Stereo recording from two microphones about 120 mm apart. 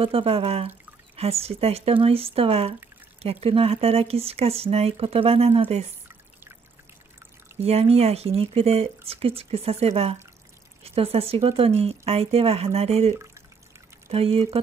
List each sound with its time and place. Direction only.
0.0 s speech: 50° right (ahead or behind)
7.6 s speech: 60° right (ahead or behind)
14.1 s speech: 55° right (ahead or behind)